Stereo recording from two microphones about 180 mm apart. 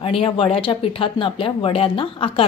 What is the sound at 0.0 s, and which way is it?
Speech, 30° left (ahead or behind).